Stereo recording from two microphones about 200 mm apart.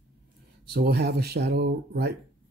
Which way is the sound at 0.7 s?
55° right (ahead or behind).